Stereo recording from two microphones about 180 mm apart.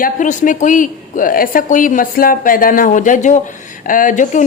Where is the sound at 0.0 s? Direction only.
45° left (ahead or behind).